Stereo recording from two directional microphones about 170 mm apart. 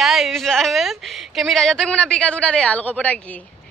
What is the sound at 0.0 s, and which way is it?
A woman's voice, centre (ahead or behind).